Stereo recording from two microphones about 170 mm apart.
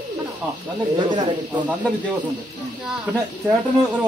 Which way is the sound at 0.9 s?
25° right (ahead or behind).